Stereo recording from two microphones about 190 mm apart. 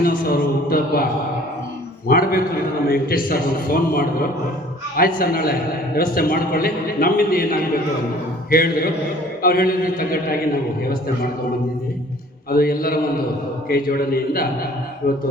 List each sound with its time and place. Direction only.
0.0 s a sound: 50° left (ahead or behind)
2.0 s a man's voice: 50° left (ahead or behind)
8.4 s a man's voice: 50° left (ahead or behind)
12.5 s a man's voice: 50° left (ahead or behind)